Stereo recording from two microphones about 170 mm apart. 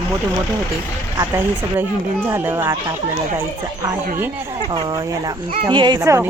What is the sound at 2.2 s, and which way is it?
Speech, 15° right (ahead or behind).